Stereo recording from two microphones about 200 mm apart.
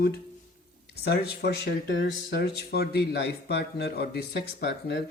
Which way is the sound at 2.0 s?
55° left (ahead or behind).